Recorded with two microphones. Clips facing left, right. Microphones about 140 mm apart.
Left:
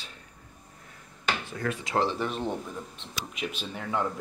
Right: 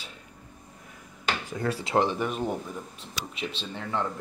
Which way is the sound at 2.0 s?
10° right (ahead or behind).